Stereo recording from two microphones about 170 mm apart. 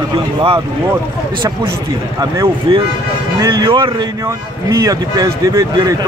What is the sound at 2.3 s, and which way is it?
Speech, 20° right (ahead or behind).